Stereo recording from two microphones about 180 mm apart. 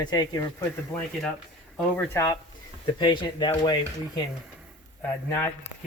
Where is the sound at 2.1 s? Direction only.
20° left (ahead or behind).